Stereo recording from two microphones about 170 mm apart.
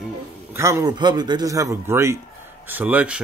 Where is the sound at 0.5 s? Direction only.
15° right (ahead or behind).